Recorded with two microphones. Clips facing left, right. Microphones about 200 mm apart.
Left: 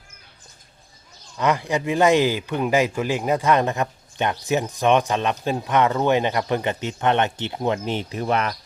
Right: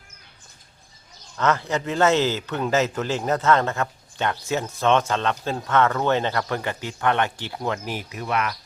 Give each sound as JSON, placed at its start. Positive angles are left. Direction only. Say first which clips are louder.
{"t": 1.4, "sound": "speech", "louder": "left 1 dB", "side_deg": 15}